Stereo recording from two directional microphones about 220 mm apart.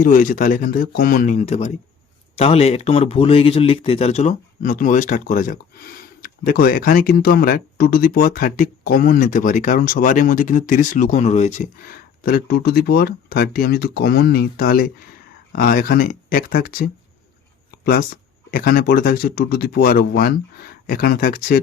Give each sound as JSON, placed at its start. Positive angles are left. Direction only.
{"t": 0.0, "sound": "speech", "side_deg": 40}